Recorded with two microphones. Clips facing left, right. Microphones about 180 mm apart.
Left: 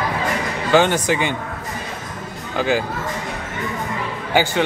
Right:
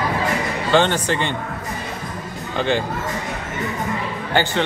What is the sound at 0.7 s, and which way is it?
Speech, 10° left (ahead or behind).